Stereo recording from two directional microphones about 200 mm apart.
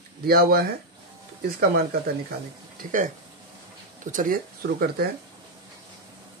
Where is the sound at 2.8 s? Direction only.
40° right (ahead or behind).